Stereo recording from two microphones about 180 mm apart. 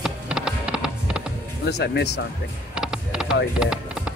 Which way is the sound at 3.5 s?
5° right (ahead or behind).